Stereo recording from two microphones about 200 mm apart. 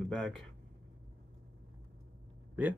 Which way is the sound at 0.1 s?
Centre (ahead or behind).